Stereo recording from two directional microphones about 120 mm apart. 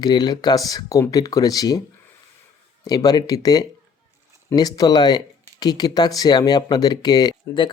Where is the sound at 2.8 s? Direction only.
30° left (ahead or behind).